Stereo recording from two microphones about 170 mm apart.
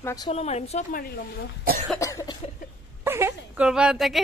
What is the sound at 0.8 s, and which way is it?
Speech, 55° left (ahead or behind).